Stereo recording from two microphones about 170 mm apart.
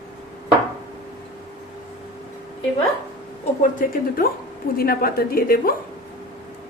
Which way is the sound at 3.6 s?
55° left (ahead or behind).